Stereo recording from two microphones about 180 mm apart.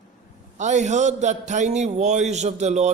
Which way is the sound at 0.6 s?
40° right (ahead or behind).